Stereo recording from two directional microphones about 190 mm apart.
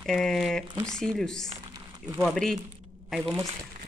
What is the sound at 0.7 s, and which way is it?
Speech, 15° right (ahead or behind).